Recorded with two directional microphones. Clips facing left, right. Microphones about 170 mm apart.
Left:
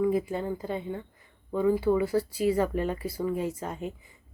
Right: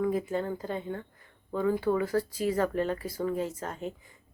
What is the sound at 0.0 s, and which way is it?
A woman's voice, 10° left (ahead or behind).